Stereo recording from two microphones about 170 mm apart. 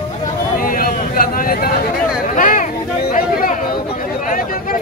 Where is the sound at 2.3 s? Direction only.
50° left (ahead or behind).